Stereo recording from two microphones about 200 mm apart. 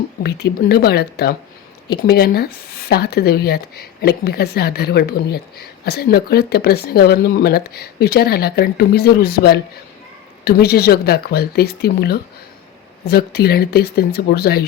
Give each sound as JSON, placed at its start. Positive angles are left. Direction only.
{"t": 0.2, "sound": "speech", "side_deg": 55}